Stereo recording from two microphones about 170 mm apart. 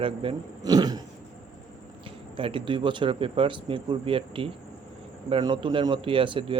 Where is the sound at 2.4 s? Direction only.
30° right (ahead or behind).